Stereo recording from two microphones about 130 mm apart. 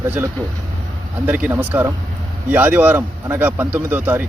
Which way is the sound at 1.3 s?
15° right (ahead or behind).